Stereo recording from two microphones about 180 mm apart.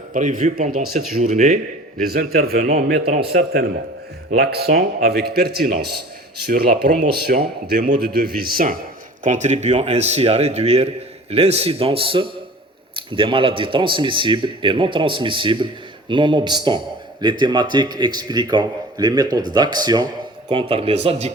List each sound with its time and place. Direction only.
0.1 s speech: 45° right (ahead or behind)
2.0 s a man's voice: 55° right (ahead or behind)
9.2 s a man's voice: 40° right (ahead or behind)